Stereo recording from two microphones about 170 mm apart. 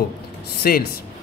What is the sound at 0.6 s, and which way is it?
Speech, 60° left (ahead or behind).